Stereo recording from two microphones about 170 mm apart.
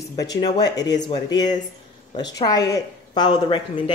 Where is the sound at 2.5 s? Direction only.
20° left (ahead or behind).